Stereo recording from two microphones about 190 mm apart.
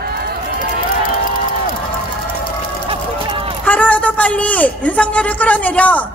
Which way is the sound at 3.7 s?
5° left (ahead or behind).